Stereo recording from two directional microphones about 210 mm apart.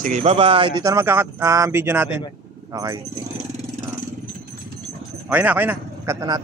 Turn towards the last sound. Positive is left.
turn(degrees=-15)  # may be behind; listen again after turning